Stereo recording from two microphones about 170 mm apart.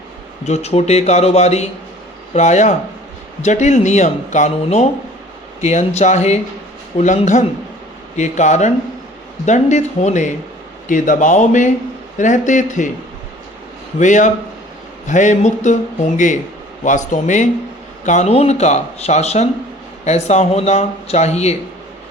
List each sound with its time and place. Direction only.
0.4 s speech: 40° left (ahead or behind)
14.0 s speech: 45° left (ahead or behind)